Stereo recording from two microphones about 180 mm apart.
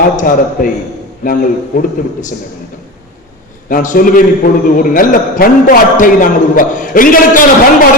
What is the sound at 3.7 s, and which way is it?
A man's voice, 45° left (ahead or behind).